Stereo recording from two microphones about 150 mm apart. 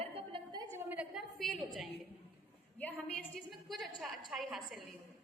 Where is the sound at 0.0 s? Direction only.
40° right (ahead or behind).